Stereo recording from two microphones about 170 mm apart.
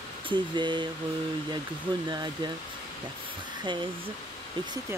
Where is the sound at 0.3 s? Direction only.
25° right (ahead or behind).